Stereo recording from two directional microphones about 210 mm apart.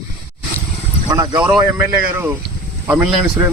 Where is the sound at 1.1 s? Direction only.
15° right (ahead or behind).